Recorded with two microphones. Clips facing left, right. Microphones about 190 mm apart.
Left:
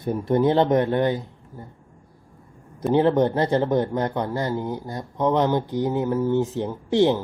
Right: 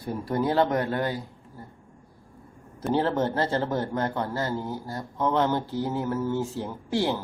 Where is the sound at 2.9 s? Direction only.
20° left (ahead or behind).